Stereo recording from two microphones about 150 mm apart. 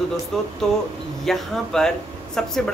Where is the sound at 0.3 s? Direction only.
5° left (ahead or behind).